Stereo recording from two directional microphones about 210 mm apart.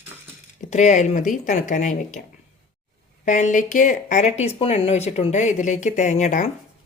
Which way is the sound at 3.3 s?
35° left (ahead or behind).